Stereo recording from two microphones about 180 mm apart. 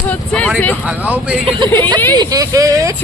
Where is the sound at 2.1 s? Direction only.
20° right (ahead or behind).